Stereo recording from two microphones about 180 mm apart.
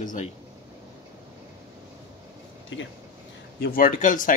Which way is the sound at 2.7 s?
90° left.